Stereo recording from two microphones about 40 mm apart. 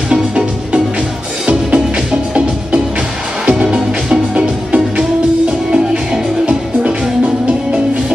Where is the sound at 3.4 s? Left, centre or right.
Right.